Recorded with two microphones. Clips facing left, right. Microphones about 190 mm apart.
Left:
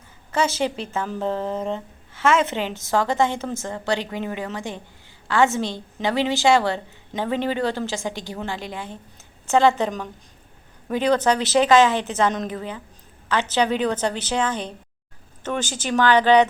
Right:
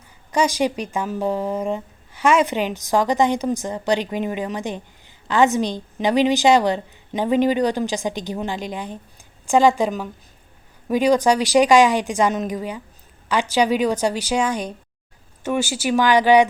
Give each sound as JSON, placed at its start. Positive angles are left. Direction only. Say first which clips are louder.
{"t": 0.3, "sound": "a woman's voice", "louder": "right 3 dB", "side_deg": -15}